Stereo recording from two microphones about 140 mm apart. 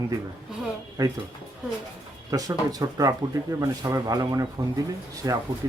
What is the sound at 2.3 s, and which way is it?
Speech, 25° right (ahead or behind).